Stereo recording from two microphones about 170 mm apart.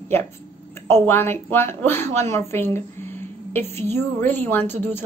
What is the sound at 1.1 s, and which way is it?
A woman's voice, 15° left (ahead or behind).